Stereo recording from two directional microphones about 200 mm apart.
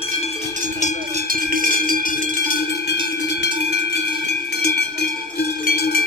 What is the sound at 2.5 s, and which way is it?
Cowbell, 45° left (ahead or behind).